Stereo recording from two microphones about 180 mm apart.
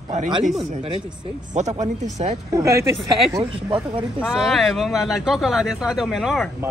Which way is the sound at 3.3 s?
30° right (ahead or behind).